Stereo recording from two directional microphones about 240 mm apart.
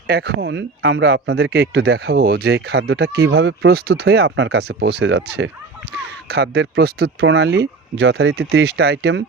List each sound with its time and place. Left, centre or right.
0.1 s speech: right